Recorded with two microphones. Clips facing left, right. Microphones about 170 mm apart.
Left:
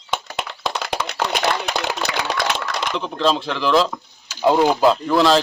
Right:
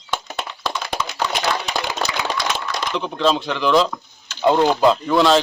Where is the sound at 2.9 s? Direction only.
Centre (ahead or behind).